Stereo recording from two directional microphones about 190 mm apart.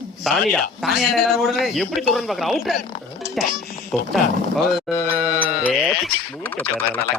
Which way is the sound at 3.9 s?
Centre (ahead or behind).